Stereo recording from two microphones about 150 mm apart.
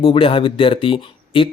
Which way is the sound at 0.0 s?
35° left (ahead or behind).